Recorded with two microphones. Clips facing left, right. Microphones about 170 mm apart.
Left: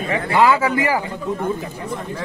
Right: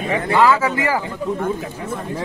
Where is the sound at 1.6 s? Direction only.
5° right (ahead or behind).